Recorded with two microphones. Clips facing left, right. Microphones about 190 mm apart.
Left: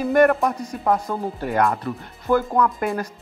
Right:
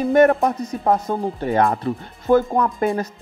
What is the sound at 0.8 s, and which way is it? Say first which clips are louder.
Speech: right 2 dB; 25° right (ahead or behind).